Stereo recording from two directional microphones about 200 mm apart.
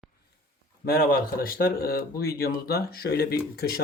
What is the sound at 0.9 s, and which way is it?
A man's voice, 50° left (ahead or behind).